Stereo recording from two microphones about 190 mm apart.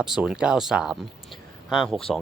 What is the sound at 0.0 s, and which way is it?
Speech, centre (ahead or behind).